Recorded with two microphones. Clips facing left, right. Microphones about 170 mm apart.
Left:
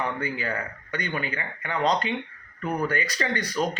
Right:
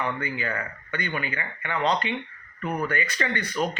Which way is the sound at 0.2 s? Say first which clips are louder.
Left 1 dB; 35° left (ahead or behind).